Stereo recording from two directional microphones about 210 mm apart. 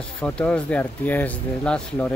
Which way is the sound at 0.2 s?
5° left (ahead or behind).